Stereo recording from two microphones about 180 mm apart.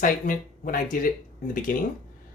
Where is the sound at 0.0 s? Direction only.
50° left (ahead or behind).